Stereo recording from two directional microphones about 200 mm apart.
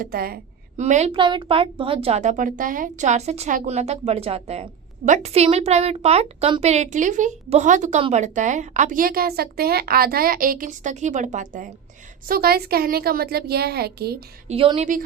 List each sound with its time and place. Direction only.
0.0 s a woman's voice: 50° right (ahead or behind)
0.8 s a woman's voice: 35° right (ahead or behind)
1.1 s a woman's voice: 25° right (ahead or behind); by 14.2 s 50° right (ahead or behind)
14.4 s a woman's voice: 30° right (ahead or behind)